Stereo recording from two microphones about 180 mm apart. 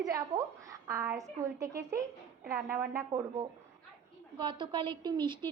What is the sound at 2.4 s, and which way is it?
Speech, 55° right (ahead or behind).